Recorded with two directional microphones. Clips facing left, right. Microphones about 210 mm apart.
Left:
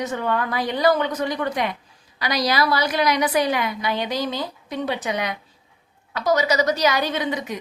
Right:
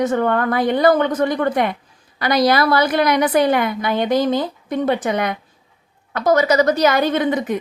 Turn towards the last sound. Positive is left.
turn(degrees=-50)  # may be behind; listen again after turning